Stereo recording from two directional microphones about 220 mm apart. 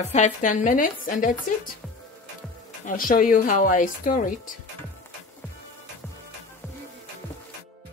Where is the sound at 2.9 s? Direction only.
40° left (ahead or behind).